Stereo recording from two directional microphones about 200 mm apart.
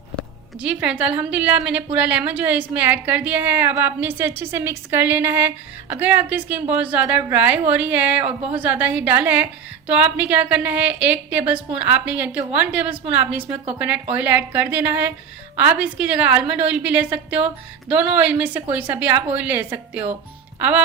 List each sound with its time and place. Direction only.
0.6 s a woman's voice: 5° right (ahead or behind)
8.2 s a woman's voice: 30° right (ahead or behind)
8.5 s a woman's voice: 10° right (ahead or behind)